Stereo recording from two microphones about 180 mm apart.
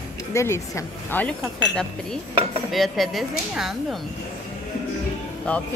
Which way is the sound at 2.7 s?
Centre (ahead or behind).